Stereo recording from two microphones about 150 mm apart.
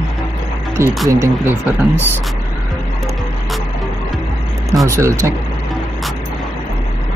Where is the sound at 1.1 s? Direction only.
15° right (ahead or behind).